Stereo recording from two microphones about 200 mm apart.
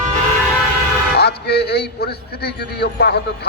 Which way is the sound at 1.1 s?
55° left (ahead or behind).